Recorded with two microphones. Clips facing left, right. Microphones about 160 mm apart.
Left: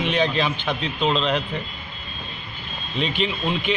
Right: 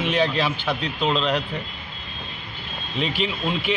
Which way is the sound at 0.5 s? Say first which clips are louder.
Even; 20° left (ahead or behind).